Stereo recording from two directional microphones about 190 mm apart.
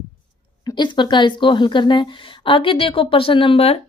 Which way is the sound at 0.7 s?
25° left (ahead or behind).